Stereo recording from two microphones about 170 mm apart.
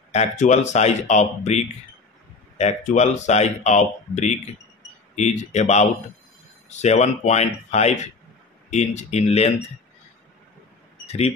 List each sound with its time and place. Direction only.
0.1 s speech: 45° left (ahead or behind)
11.1 s speech: 35° left (ahead or behind)